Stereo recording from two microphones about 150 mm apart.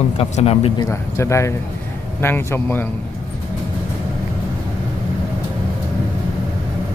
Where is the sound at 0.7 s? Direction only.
20° left (ahead or behind).